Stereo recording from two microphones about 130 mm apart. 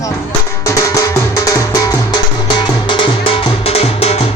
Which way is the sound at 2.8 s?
40° left (ahead or behind).